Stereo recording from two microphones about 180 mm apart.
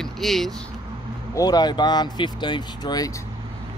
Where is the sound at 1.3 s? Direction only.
20° left (ahead or behind).